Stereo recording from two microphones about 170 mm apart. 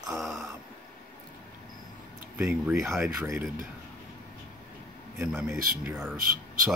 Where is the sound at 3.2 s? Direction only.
15° right (ahead or behind).